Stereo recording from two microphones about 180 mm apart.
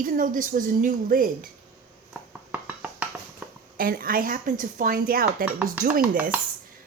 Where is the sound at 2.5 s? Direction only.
10° right (ahead or behind).